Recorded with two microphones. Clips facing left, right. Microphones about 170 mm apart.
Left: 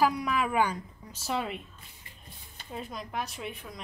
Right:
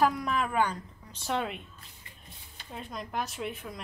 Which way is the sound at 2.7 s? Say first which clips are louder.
Even; centre (ahead or behind).